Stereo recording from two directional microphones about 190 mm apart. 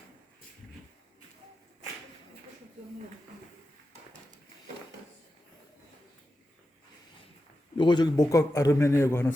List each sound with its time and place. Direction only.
7.8 s a man's voice: 25° left (ahead or behind)